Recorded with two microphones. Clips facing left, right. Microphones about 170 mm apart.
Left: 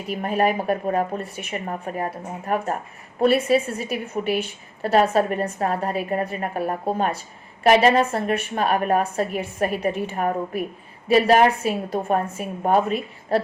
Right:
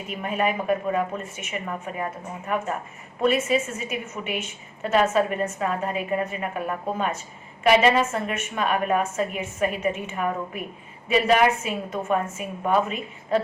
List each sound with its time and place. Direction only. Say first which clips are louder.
0.1 s a woman's voice: left 4 dB; 35° left (ahead or behind)